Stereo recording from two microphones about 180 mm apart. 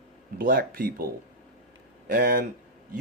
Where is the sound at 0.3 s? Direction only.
55° right (ahead or behind).